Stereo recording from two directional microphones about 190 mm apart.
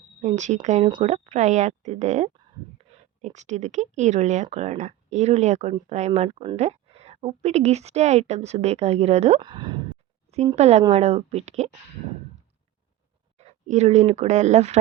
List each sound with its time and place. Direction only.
0.2 s speech: 40° right (ahead or behind)
13.4 s speech: 35° right (ahead or behind)